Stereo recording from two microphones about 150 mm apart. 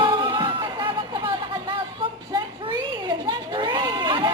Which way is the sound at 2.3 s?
30° right (ahead or behind).